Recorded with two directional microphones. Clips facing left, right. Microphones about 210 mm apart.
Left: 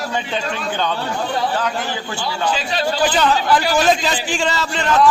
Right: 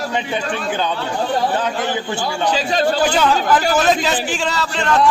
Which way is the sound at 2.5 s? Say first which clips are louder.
Right 4 dB; 40° right (ahead or behind).